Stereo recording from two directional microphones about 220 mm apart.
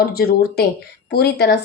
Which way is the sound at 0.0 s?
45° left (ahead or behind).